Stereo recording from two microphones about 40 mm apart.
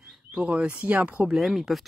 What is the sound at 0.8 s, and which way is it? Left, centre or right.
Speech, right.